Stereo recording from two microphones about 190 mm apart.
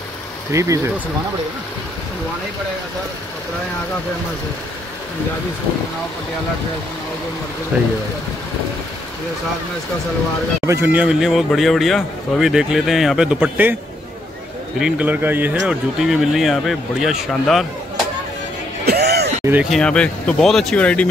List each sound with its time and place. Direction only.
0.5 s speech: 15° right (ahead or behind)
10.6 s a man's voice: 15° right (ahead or behind)
14.8 s a man's voice: 5° right (ahead or behind)
18.9 s yell: 60° right (ahead or behind)
19.4 s speech: 10° right (ahead or behind)
19.7 s a man's voice: 5° left (ahead or behind)